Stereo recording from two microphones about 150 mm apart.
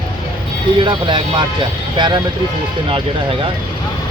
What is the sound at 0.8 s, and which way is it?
Speech, 30° right (ahead or behind).